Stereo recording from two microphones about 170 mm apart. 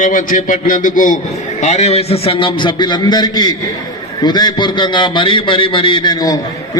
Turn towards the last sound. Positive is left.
turn(degrees=20)  # may be behind; listen again after turning